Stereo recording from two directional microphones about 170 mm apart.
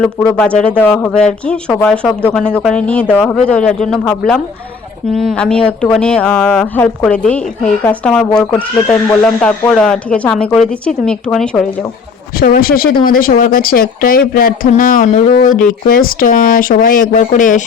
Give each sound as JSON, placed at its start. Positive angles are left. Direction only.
{"t": 0.3, "sound": "a woman's voice", "side_deg": 5}
{"t": 12.4, "sound": "speech", "side_deg": 60}